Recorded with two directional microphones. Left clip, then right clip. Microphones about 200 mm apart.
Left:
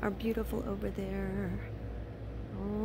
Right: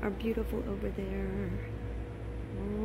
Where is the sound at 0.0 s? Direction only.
10° left (ahead or behind).